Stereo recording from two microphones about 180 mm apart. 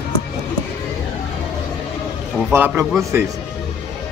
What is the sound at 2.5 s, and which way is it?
Speech, 15° right (ahead or behind).